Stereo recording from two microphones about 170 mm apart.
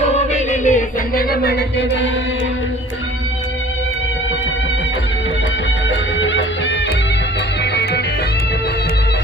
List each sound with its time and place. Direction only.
0.0 s music: 40° left (ahead or behind); by 2.0 s 90° left
5.9 s music: 90° left